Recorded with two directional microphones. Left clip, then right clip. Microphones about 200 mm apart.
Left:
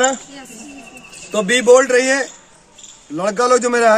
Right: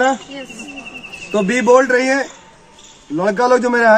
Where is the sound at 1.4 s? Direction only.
40° left (ahead or behind).